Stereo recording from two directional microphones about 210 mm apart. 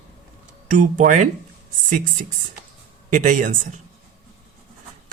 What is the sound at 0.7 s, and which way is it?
Speech, 35° right (ahead or behind).